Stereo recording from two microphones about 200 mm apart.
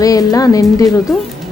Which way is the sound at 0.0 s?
15° left (ahead or behind).